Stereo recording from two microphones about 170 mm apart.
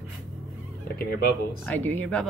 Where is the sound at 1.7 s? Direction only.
10° left (ahead or behind).